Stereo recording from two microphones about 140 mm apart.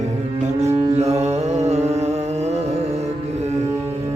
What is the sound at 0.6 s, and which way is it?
Music, 50° right (ahead or behind).